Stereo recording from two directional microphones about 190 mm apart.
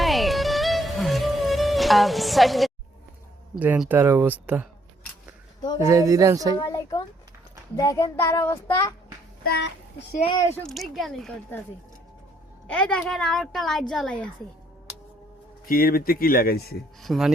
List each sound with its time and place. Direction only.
0.0 s music: centre (ahead or behind)
3.5 s speech: 5° right (ahead or behind)
5.8 s speech: 15° right (ahead or behind)
6.6 s a child's voice: 15° left (ahead or behind)
9.4 s a child's voice: 60° left (ahead or behind)
10.5 s a woman's voice: centre (ahead or behind)
12.6 s a woman's voice: 5° left (ahead or behind)
15.6 s speech: 50° left (ahead or behind)
17.0 s a woman's voice: centre (ahead or behind)